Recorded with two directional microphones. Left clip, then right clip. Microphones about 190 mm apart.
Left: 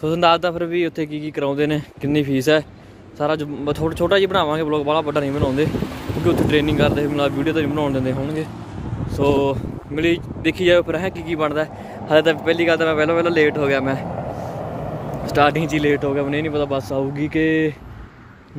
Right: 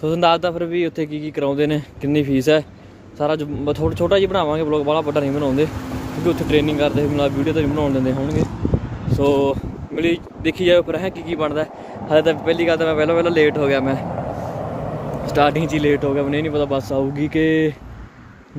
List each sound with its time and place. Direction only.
0.0 s speech: 5° left (ahead or behind)
9.9 s speech: 5° left (ahead or behind)
14.0 s vehicle: 20° left (ahead or behind)
15.0 s speech: centre (ahead or behind)